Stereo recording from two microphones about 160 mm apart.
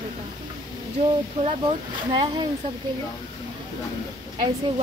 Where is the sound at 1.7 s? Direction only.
30° right (ahead or behind).